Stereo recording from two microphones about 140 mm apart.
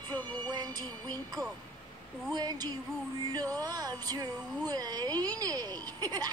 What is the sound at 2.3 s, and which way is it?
Speech, 30° right (ahead or behind).